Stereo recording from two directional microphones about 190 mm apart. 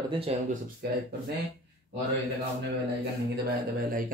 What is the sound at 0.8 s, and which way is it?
Speech, 60° right (ahead or behind).